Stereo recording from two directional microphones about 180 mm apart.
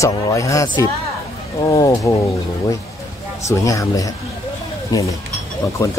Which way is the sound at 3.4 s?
15° left (ahead or behind).